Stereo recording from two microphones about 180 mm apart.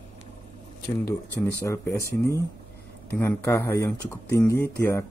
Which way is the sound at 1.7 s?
15° left (ahead or behind).